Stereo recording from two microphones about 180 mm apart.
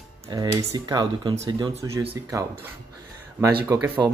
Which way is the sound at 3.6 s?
15° right (ahead or behind).